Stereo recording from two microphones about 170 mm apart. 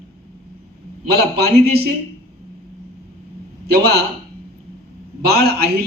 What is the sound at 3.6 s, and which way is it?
Speech, 70° right (ahead or behind).